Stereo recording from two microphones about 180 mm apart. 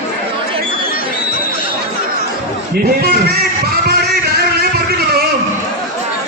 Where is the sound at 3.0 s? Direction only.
60° right (ahead or behind).